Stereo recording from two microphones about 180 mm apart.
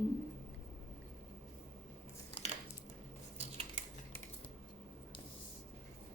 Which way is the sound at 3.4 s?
30° right (ahead or behind).